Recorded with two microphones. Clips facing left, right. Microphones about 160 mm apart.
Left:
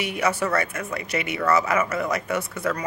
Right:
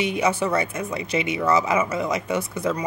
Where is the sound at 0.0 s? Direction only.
20° right (ahead or behind).